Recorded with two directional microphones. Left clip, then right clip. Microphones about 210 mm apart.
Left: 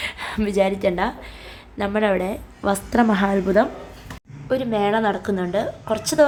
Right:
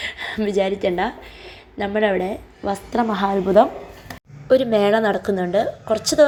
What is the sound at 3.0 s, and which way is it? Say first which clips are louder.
Speech: even; 25° left (ahead or behind).